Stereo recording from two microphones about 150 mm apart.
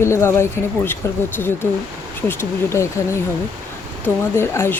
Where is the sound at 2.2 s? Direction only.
15° left (ahead or behind).